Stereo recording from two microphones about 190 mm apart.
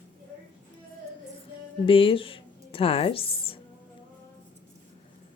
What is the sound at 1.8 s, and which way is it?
Speech, 30° left (ahead or behind).